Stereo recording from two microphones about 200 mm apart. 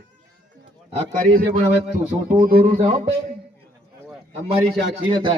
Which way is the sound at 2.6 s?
30° right (ahead or behind).